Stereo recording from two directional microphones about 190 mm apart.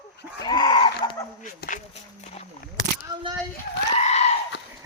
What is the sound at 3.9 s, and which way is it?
Goat, 35° left (ahead or behind).